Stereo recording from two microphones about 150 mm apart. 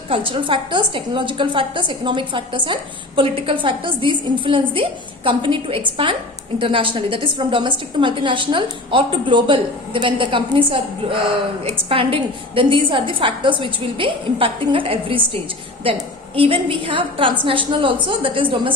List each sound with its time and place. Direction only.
0.1 s a woman's voice: 35° right (ahead or behind)